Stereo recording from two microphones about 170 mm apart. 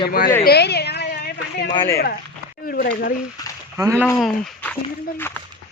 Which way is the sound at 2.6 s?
60° left (ahead or behind).